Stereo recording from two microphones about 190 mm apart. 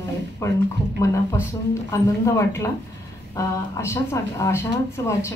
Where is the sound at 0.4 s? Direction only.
15° left (ahead or behind).